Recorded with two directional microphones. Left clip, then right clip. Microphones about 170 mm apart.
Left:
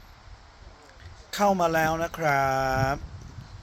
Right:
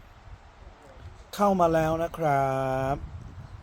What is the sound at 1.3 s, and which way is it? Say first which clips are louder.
Speech: even; 30° right (ahead or behind).